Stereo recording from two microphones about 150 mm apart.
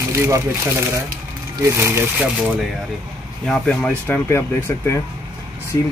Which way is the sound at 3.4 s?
5° left (ahead or behind).